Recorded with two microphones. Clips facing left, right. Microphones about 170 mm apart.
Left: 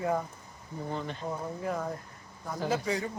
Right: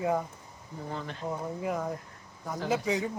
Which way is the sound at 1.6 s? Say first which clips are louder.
Right 1 dB; 10° right (ahead or behind).